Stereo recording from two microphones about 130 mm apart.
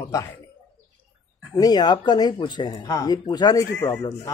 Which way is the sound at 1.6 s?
30° left (ahead or behind).